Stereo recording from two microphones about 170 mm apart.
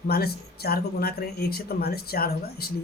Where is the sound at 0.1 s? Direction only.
65° left (ahead or behind).